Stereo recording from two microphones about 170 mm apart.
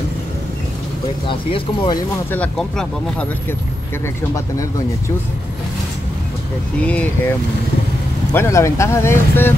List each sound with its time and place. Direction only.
1.2 s speech: 30° left (ahead or behind)
2.3 s speech: 5° left (ahead or behind)
6.8 s speech: 10° left (ahead or behind)